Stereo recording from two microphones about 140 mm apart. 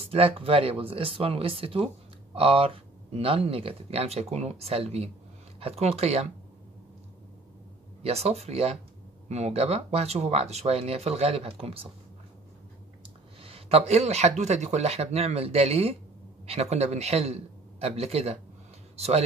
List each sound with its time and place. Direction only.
0.0 s speech: 40° right (ahead or behind)
8.0 s speech: 50° right (ahead or behind)
13.4 s speech: 45° right (ahead or behind)